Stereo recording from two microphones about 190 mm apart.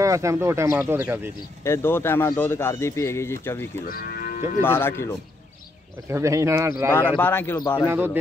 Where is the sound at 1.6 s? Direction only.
15° left (ahead or behind).